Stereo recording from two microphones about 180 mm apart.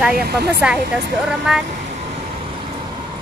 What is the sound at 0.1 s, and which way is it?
Speech, 60° right (ahead or behind).